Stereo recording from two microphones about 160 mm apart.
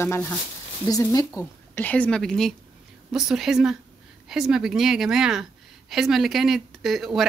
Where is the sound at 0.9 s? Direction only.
20° left (ahead or behind).